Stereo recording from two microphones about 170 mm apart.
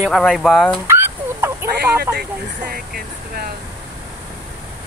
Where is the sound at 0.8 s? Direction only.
15° right (ahead or behind).